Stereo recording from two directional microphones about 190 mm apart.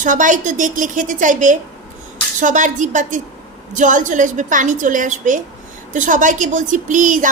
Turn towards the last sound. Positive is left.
turn(degrees=-40)  # may be behind; listen again after turning